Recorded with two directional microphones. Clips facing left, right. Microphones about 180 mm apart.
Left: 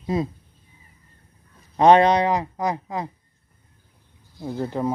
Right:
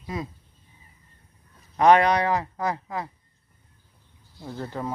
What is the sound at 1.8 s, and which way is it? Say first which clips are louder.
Speech: left 3 dB; 25° left (ahead or behind).